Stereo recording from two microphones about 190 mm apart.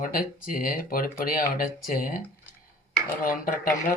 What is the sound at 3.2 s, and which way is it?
Speech, 45° left (ahead or behind).